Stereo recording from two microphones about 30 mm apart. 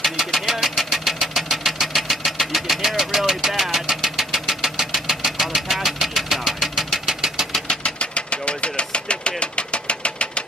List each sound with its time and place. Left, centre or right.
0.0 s vehicle: centre
7.1 s engine: centre
7.6 s a sound: left
8.0 s engine: left